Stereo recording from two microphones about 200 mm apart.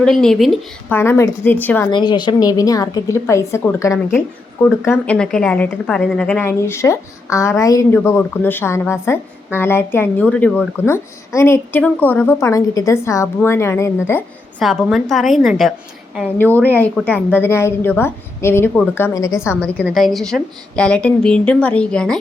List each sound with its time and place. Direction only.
0.0 s a woman's voice: 5° left (ahead or behind)
0.9 s a woman's voice: 10° left (ahead or behind)
1.9 s a woman's voice: 20° left (ahead or behind)
14.6 s a woman's voice: centre (ahead or behind)